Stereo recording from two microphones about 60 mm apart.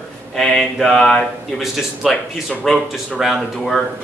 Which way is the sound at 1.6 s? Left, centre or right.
Centre.